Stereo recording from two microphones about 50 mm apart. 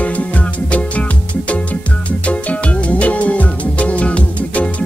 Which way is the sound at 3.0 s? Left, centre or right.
Left.